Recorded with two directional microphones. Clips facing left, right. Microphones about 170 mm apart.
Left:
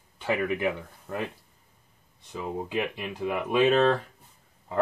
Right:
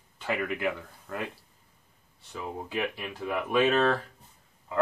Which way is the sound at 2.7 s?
20° left (ahead or behind).